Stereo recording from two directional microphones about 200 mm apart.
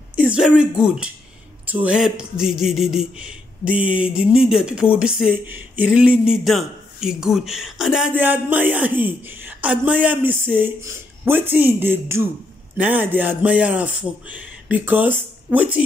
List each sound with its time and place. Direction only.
0.3 s speech: 5° right (ahead or behind)